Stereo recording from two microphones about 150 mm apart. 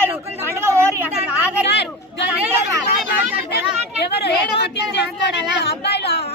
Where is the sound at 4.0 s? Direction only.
90° left.